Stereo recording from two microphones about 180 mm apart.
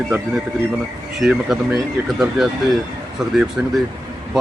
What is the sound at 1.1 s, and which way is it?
Speech, centre (ahead or behind).